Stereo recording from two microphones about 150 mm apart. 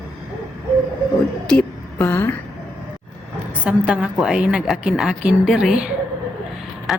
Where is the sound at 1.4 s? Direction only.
10° left (ahead or behind).